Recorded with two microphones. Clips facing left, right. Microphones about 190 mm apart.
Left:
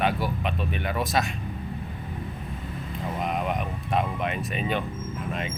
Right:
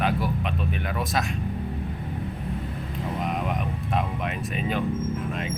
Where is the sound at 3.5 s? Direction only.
Centre (ahead or behind).